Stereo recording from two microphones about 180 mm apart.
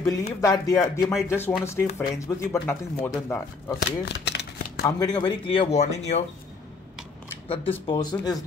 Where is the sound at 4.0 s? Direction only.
65° left (ahead or behind).